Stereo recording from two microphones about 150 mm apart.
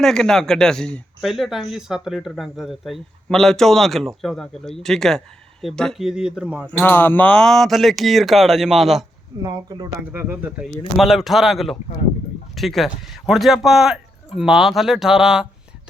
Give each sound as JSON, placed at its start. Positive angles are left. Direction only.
{"t": 0.0, "sound": "speech", "side_deg": 5}
{"t": 6.7, "sound": "speech", "side_deg": 10}
{"t": 9.4, "sound": "speech", "side_deg": -30}
{"t": 10.0, "sound": "speech", "side_deg": -15}
{"t": 10.9, "sound": "speech", "side_deg": 0}